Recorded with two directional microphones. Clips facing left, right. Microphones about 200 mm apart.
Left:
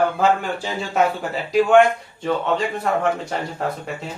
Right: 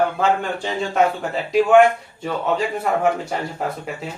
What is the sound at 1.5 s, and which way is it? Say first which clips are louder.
A man's voice: right 1 dB; centre (ahead or behind).